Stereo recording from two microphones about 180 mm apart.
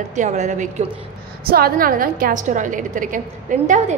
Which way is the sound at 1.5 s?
55° right (ahead or behind).